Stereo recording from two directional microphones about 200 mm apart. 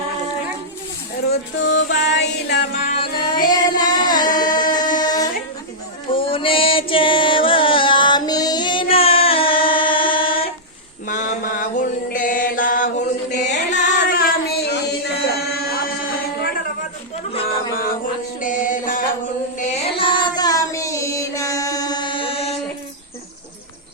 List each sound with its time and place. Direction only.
1.3 s music: 60° left (ahead or behind)
2.9 s music: 25° left (ahead or behind)
11.1 s mantra: 40° left (ahead or behind)
13.7 s singing: 40° left (ahead or behind)
17.4 s a sound: 45° left (ahead or behind)
18.3 s music: 40° left (ahead or behind)
19.5 s child singing: 35° left (ahead or behind)